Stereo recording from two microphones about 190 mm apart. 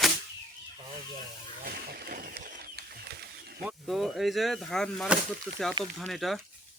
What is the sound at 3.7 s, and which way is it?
Speech, centre (ahead or behind).